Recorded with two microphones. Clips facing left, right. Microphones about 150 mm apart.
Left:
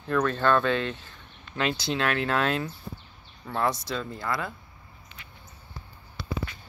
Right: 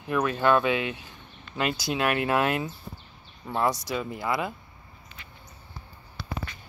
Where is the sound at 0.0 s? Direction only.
10° right (ahead or behind).